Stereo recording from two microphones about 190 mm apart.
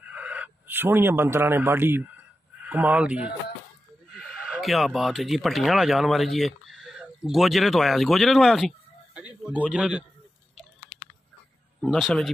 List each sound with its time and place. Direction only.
0.0 s speech: 5° right (ahead or behind)
11.8 s speech: centre (ahead or behind)